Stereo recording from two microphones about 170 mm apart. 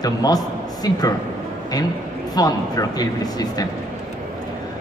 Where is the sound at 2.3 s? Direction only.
20° left (ahead or behind).